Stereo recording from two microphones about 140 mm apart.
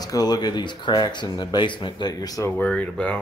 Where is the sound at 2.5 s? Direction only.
10° left (ahead or behind).